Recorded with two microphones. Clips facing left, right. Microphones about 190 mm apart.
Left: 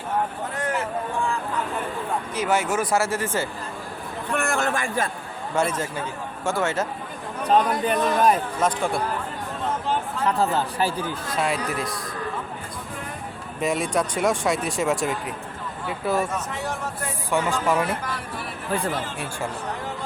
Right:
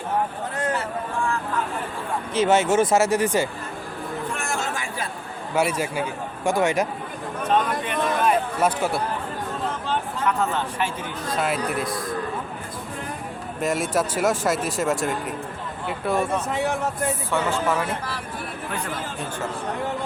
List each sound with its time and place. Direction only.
2.3 s speech: 25° right (ahead or behind)
4.3 s a sound: 60° left (ahead or behind)
5.5 s a man's voice: 10° right (ahead or behind)
7.4 s speech: 35° left (ahead or behind)
8.6 s speech: 5° right (ahead or behind)
10.2 s speech: 35° left (ahead or behind)
11.3 s speech: centre (ahead or behind)
13.6 s speech: centre (ahead or behind)
17.3 s speech: 15° left (ahead or behind)